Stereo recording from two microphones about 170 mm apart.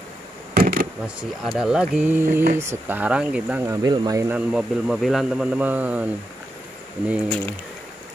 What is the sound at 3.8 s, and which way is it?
Speech, 25° right (ahead or behind).